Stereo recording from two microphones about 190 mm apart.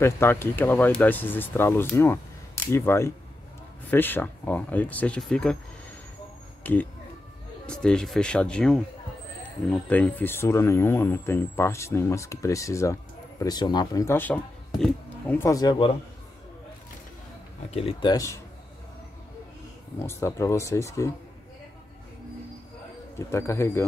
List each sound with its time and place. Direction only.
0.0 s speech: 10° left (ahead or behind)
6.6 s speech: 10° left (ahead or behind); by 16.0 s 25° left (ahead or behind)
17.6 s speech: 30° left (ahead or behind)
18.1 s speech: 15° left (ahead or behind)
20.0 s speech: 15° left (ahead or behind)
23.1 s speech: 15° left (ahead or behind)